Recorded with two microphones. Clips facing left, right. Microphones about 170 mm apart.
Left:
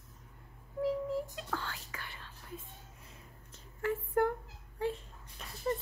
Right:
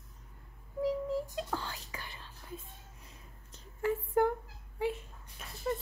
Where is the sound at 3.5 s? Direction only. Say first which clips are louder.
Right 2 dB; 15° right (ahead or behind).